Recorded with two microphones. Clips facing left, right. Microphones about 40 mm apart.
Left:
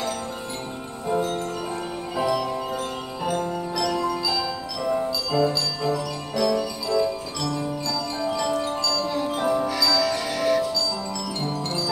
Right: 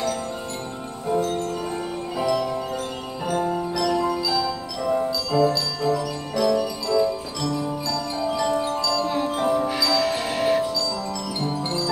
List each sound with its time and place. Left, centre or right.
1.0 s music: centre
3.3 s music: centre
8.2 s music: centre
8.9 s music: right
9.3 s music: centre
9.7 s music: right